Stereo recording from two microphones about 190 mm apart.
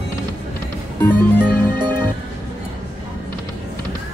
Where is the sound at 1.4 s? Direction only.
25° right (ahead or behind).